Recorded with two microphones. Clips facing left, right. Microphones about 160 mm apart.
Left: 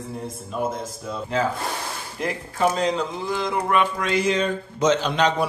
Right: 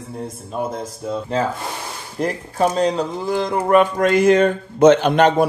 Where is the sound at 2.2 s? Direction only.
40° right (ahead or behind).